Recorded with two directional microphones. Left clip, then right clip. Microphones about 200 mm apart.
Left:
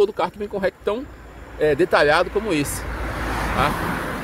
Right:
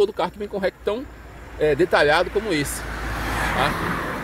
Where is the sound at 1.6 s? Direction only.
5° left (ahead or behind).